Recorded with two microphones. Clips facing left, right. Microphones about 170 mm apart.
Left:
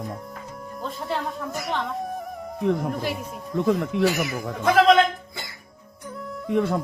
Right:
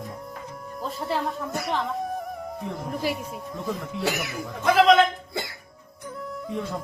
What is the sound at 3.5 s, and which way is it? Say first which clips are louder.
Speech: left 10 dB; 70° left (ahead or behind).